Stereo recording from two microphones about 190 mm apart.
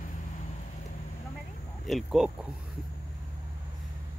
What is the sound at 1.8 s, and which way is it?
Speech, centre (ahead or behind).